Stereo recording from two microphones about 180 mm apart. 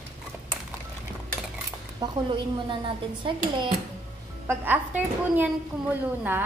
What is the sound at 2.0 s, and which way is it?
Speech, 20° right (ahead or behind).